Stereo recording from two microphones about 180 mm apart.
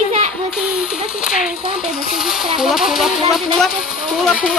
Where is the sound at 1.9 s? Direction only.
5° right (ahead or behind).